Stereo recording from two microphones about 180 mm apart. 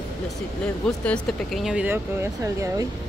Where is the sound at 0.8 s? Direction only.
5° left (ahead or behind); by 2.9 s 15° right (ahead or behind).